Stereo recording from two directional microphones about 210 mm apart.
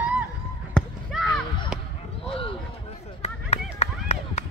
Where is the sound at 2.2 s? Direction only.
25° left (ahead or behind).